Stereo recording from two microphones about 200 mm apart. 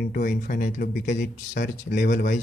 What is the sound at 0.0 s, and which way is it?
Speech, 45° left (ahead or behind).